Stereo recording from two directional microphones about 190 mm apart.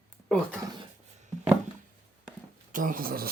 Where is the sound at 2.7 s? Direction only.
45° right (ahead or behind).